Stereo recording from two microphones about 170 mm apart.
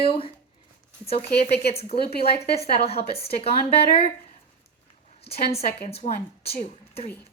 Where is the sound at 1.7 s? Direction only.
35° left (ahead or behind).